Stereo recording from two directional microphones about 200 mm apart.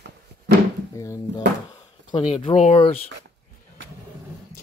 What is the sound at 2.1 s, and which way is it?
Speech, 25° left (ahead or behind).